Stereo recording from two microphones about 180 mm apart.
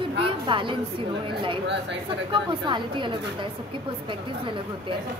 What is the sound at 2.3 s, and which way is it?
Speech, 25° right (ahead or behind).